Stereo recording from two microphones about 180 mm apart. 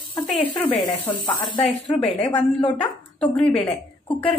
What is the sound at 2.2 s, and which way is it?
A woman's voice, 10° left (ahead or behind).